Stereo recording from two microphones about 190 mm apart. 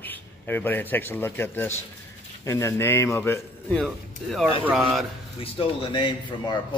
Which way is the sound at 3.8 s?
Centre (ahead or behind).